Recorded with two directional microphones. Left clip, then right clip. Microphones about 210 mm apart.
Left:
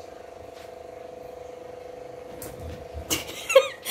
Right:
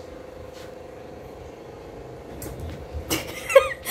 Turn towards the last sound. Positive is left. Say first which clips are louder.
# right 2 dB
turn(degrees=0)  # may be behind; listen again after turning